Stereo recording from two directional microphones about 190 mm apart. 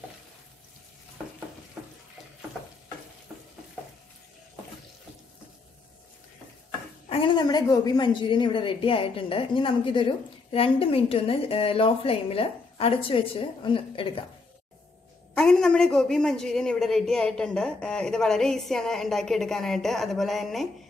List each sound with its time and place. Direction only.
7.1 s a woman's voice: 25° left (ahead or behind)
15.3 s a woman's voice: 5° left (ahead or behind)